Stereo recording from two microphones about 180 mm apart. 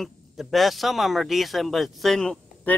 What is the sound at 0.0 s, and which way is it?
Speech, centre (ahead or behind).